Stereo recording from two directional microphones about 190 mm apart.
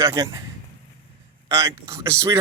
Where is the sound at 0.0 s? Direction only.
20° right (ahead or behind).